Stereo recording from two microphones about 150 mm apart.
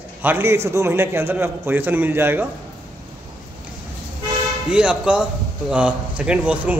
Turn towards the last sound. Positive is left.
turn(degrees=-10)  # may be behind; listen again after turning